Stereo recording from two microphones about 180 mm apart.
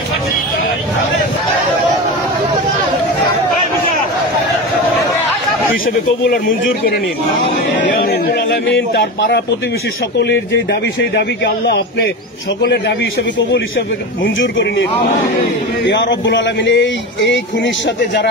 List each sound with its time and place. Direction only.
8.1 s speech: 65° left (ahead or behind)
10.1 s speech: 75° left (ahead or behind); by 12.9 s 60° left (ahead or behind)
14.4 s speech: 85° left